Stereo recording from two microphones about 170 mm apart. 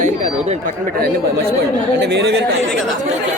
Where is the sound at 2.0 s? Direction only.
85° right.